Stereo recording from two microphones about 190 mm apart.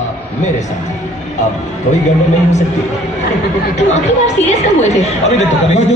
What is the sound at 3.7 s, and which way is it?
Speech, 35° left (ahead or behind).